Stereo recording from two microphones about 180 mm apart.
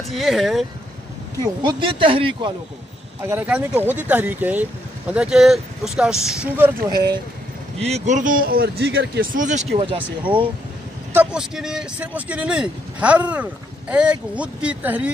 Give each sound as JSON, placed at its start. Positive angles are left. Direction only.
{"t": 0.1, "sound": "speech", "side_deg": 0}
{"t": 1.4, "sound": "speech", "side_deg": -25}
{"t": 3.2, "sound": "speech", "side_deg": -10}
{"t": 7.8, "sound": "a man's voice", "side_deg": -40}
{"t": 9.9, "sound": "speech", "side_deg": -10}